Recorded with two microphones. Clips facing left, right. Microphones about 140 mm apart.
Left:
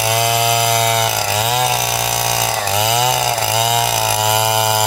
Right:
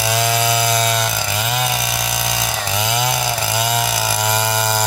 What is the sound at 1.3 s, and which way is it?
Chainsaw, 35° left (ahead or behind).